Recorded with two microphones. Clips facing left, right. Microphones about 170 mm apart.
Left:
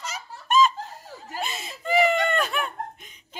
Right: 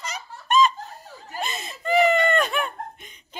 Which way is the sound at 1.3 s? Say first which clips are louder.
Right 1 dB; 5° left (ahead or behind).